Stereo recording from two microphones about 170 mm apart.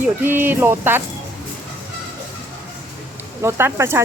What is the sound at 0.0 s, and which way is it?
Speech, 10° right (ahead or behind).